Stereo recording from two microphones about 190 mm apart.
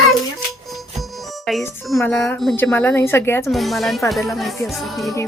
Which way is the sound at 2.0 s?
5° left (ahead or behind).